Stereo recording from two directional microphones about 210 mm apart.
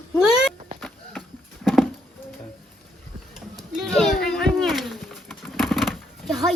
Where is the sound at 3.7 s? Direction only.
Centre (ahead or behind).